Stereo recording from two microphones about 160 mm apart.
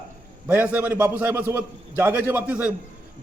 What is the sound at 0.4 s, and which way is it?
A man's voice, 10° right (ahead or behind).